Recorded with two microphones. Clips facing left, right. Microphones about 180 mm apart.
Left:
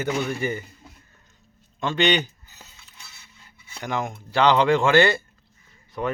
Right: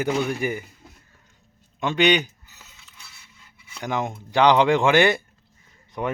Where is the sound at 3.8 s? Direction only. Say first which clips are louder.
Right 1 dB; 15° right (ahead or behind).